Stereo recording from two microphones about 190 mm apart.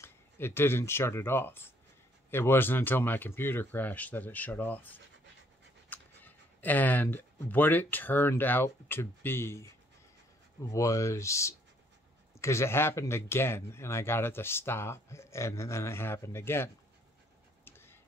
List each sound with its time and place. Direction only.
0.0 s speech: 10° left (ahead or behind)
10.7 s speech: 15° left (ahead or behind)
17.6 s a sound: 10° left (ahead or behind)